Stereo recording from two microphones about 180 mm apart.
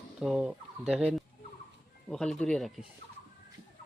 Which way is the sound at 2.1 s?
5° left (ahead or behind).